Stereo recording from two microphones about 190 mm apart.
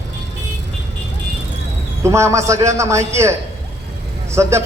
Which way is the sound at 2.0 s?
15° right (ahead or behind).